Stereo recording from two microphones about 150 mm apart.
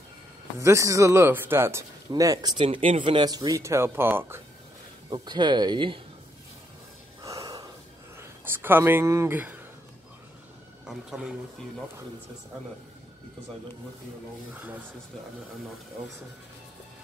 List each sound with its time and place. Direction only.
0.6 s speech: 20° right (ahead or behind)
5.1 s speech: 30° right (ahead or behind)
7.2 s snort: 25° right (ahead or behind)
8.2 s speech: 15° right (ahead or behind)
11.1 s speech: 5° right (ahead or behind)
14.5 s speech: 10° right (ahead or behind)